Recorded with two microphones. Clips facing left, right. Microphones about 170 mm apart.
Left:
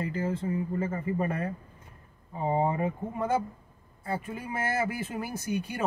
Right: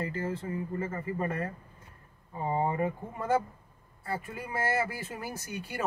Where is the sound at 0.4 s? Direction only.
15° left (ahead or behind).